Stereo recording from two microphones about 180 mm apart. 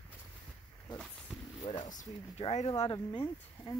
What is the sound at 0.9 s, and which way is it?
Wild animals, 5° left (ahead or behind).